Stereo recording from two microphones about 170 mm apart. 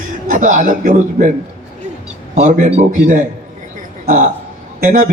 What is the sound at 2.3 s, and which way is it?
A man's voice, 40° right (ahead or behind).